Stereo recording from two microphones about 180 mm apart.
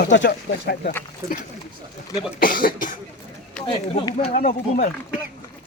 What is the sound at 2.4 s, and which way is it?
Speech, 50° left (ahead or behind).